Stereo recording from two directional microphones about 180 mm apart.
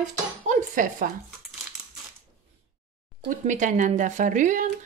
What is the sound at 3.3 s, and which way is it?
A woman's voice, 45° right (ahead or behind).